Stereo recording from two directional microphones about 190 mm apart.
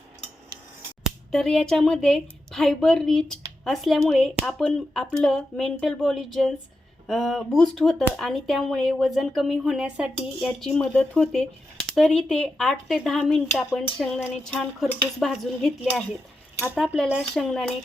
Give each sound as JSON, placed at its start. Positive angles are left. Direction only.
{"t": 1.0, "sound": "speech", "side_deg": 0}